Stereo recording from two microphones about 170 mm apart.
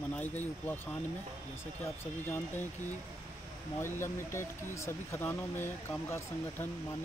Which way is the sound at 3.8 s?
15° left (ahead or behind).